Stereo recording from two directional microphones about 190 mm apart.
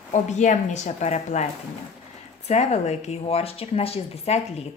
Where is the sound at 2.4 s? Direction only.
35° left (ahead or behind).